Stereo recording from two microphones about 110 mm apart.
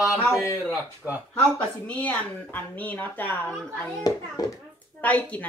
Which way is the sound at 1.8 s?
10° left (ahead or behind).